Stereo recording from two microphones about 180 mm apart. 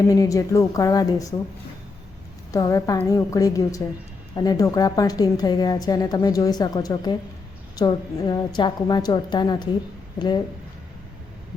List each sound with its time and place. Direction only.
0.1 s a woman's voice: 20° left (ahead or behind)
2.5 s a woman's voice: 20° left (ahead or behind)